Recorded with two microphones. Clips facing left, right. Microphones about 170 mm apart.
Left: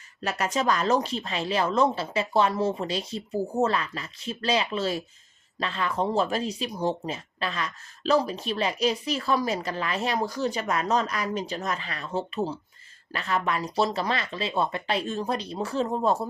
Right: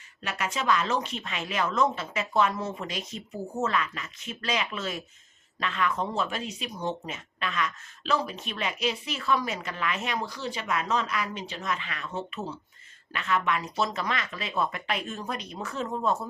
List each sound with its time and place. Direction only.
0.2 s speech: 40° left (ahead or behind)